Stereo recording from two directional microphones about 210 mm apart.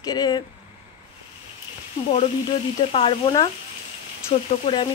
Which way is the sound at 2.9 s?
25° left (ahead or behind).